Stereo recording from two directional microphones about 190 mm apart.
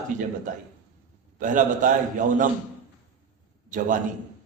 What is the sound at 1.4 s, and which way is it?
A man's voice, 45° right (ahead or behind).